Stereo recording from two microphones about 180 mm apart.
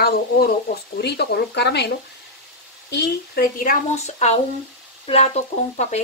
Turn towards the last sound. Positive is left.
turn(degrees=40)  # may be behind; listen again after turning